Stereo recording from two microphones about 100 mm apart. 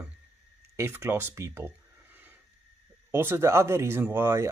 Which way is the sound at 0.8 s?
25° right (ahead or behind).